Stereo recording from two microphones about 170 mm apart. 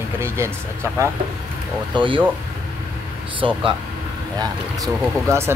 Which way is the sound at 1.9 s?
30° right (ahead or behind).